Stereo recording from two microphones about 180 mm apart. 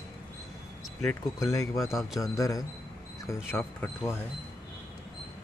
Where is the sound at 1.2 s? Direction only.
20° left (ahead or behind).